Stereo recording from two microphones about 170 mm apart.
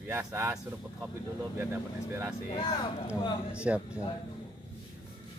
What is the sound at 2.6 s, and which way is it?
Speech, 30° left (ahead or behind).